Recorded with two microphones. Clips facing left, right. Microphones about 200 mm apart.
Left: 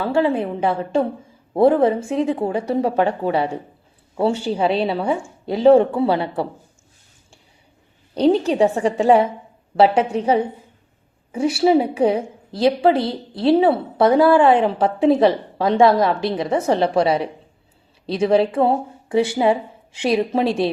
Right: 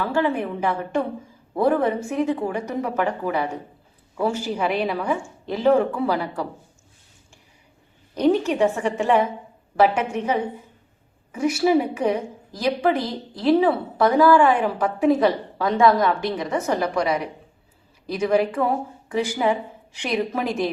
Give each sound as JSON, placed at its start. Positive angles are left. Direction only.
{"t": 0.0, "sound": "a woman's voice", "side_deg": 30}
{"t": 8.1, "sound": "a woman's voice", "side_deg": 30}
{"t": 13.0, "sound": "a woman's voice", "side_deg": 75}
{"t": 13.4, "sound": "a woman's voice", "side_deg": 30}